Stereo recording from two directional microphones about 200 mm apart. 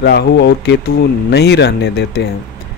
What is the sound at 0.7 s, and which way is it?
Speech, 55° left (ahead or behind).